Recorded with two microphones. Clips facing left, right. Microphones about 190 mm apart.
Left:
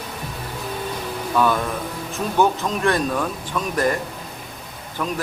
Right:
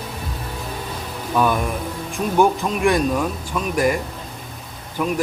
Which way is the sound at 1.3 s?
15° right (ahead or behind).